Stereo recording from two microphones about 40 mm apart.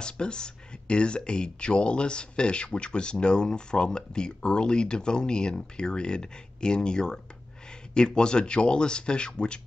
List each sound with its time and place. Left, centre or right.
0.0 s speech: left